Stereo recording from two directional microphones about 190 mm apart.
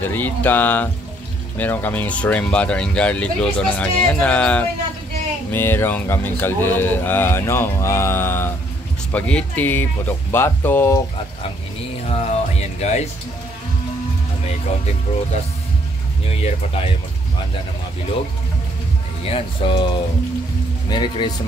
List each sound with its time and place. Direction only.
0.0 s speech: 10° left (ahead or behind)
12.1 s music: 35° left (ahead or behind)
16.3 s speech: 30° left (ahead or behind)
19.2 s speech: 30° left (ahead or behind)